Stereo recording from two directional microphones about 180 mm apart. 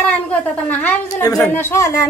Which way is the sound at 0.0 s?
10° left (ahead or behind).